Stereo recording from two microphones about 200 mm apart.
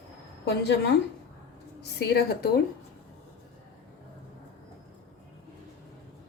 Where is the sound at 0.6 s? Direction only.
55° left (ahead or behind).